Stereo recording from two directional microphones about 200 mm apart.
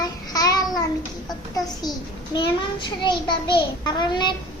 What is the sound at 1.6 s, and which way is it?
A child's voice, 20° left (ahead or behind).